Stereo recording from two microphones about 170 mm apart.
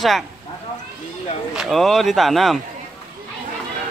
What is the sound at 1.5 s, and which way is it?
Speech, centre (ahead or behind).